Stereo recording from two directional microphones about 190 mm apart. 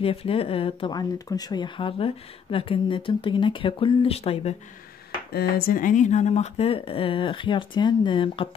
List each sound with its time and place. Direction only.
0.0 s speech: 30° left (ahead or behind)
5.3 s speech: 55° left (ahead or behind); by 8.5 s 25° left (ahead or behind)